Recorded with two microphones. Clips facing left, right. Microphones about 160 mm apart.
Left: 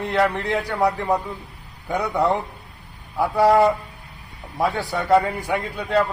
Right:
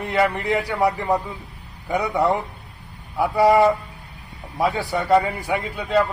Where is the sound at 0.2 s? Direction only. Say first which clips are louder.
Right 1 dB; 10° right (ahead or behind).